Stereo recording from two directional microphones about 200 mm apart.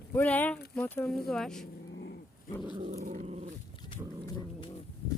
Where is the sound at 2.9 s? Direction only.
35° right (ahead or behind).